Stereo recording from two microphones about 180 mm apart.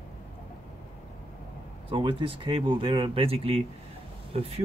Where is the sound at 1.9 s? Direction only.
30° right (ahead or behind).